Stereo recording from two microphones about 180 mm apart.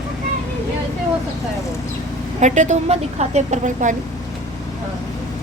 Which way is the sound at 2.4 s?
40° right (ahead or behind).